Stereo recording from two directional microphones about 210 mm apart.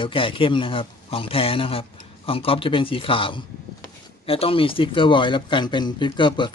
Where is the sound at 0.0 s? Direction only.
25° left (ahead or behind).